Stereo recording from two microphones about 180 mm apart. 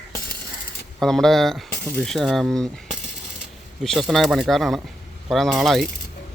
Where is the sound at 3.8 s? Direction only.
Centre (ahead or behind).